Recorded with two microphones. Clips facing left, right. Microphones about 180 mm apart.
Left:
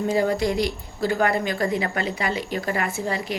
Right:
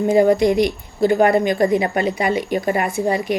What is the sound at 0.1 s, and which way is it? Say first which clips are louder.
A woman's voice: right 9 dB; 15° right (ahead or behind).